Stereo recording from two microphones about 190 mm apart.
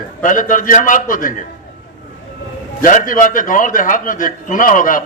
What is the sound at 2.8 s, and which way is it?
A man's voice, 45° left (ahead or behind).